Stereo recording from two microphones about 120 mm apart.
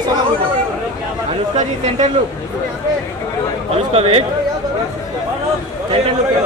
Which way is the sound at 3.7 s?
55° right (ahead or behind).